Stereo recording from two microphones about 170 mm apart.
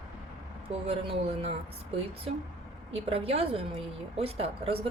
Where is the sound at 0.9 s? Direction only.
35° right (ahead or behind).